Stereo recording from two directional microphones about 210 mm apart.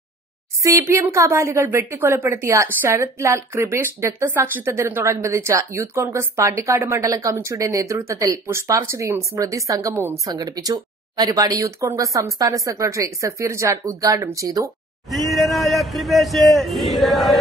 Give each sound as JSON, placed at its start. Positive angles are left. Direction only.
{"t": 0.6, "sound": "speech", "side_deg": -15}
{"t": 15.0, "sound": "a man's voice", "side_deg": 0}